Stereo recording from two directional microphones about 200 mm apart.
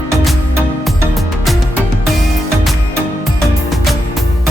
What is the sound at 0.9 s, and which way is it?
Music, centre (ahead or behind).